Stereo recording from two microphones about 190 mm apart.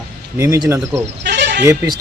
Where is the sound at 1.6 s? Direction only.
15° right (ahead or behind).